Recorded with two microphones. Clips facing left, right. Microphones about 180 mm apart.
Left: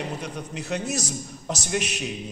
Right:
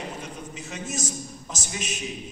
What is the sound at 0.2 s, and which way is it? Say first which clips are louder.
A man's voice: left 4 dB; 70° left (ahead or behind).